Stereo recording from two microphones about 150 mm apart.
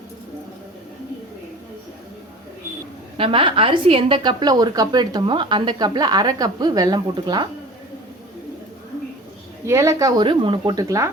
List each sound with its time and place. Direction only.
3.2 s a woman's voice: 35° right (ahead or behind)
9.6 s a woman's voice: 20° right (ahead or behind)